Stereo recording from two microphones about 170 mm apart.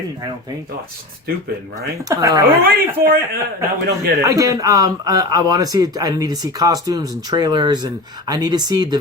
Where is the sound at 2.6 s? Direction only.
55° right (ahead or behind).